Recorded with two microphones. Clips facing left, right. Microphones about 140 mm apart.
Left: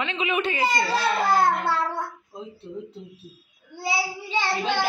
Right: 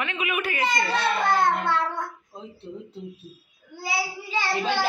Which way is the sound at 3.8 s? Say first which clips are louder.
Left 2 dB; 25° left (ahead or behind).